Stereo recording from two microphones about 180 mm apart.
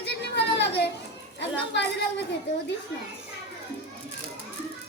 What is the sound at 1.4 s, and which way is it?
Speech, 70° left (ahead or behind).